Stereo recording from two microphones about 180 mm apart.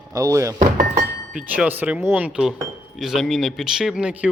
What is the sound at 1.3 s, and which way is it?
A man's voice, 10° right (ahead or behind).